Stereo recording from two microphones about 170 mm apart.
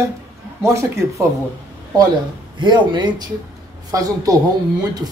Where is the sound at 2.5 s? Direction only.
25° right (ahead or behind).